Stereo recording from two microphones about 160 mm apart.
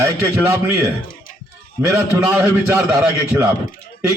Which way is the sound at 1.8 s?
15° right (ahead or behind).